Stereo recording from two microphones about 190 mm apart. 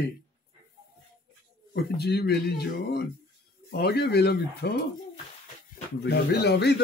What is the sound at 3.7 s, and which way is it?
Speech, 60° left (ahead or behind).